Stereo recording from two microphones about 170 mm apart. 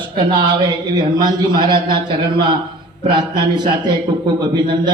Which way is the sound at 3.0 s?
25° right (ahead or behind).